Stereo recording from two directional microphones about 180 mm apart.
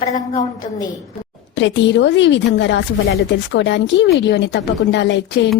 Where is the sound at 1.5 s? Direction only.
90° left.